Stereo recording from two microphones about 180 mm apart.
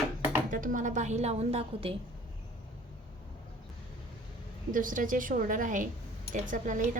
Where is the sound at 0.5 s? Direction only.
45° right (ahead or behind).